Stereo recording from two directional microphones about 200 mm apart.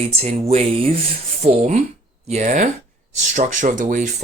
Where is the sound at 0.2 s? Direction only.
30° right (ahead or behind).